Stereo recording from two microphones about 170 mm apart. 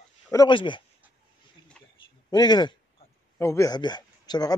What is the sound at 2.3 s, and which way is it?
A man's voice, 25° left (ahead or behind).